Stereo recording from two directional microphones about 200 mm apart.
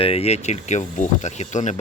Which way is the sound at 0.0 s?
30° left (ahead or behind).